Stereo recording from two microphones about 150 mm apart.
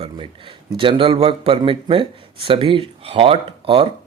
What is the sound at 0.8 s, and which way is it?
A man's voice, 35° right (ahead or behind).